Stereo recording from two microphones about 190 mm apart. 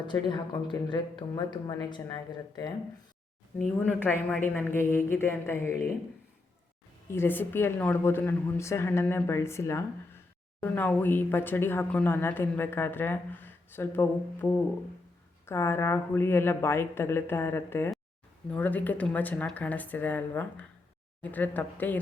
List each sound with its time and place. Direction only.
0.0 s speech: 25° left (ahead or behind)
3.8 s speech: 10° left (ahead or behind)
7.1 s speech: 10° left (ahead or behind)